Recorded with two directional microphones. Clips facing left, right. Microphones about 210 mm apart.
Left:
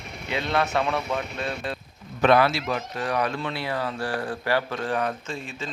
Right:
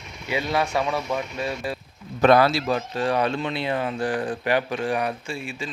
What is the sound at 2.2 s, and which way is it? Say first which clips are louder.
Speech: right 2 dB; 40° right (ahead or behind).